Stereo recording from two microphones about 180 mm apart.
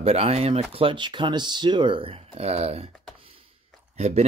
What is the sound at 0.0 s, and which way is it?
Speech, 35° right (ahead or behind).